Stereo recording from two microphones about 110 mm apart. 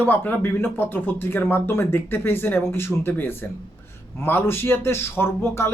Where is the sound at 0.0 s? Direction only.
15° left (ahead or behind).